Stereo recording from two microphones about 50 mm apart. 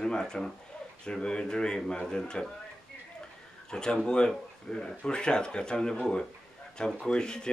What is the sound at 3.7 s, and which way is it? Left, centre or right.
Speech, centre.